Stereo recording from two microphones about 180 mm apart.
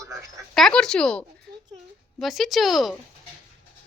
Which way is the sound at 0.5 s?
5° left (ahead or behind).